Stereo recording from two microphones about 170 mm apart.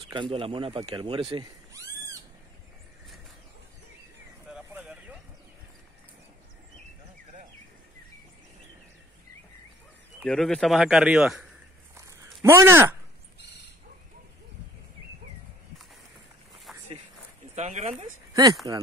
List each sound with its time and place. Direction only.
0.1 s speech: 30° right (ahead or behind)
1.3 s cat: 20° right (ahead or behind)
4.5 s a sound: 5° right (ahead or behind)
10.2 s speech: 5° left (ahead or behind)
11.9 s a sound: 20° right (ahead or behind)
13.4 s a sound: 90° left
16.7 s walk: centre (ahead or behind)
17.6 s speech: 40° right (ahead or behind)
18.6 s speech: 25° right (ahead or behind)